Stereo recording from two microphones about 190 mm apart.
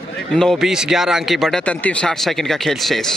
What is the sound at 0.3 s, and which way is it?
Speech, centre (ahead or behind).